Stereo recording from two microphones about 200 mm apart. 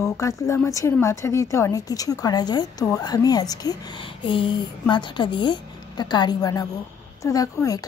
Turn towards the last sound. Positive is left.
turn(degrees=15)  # may be behind; listen again after turning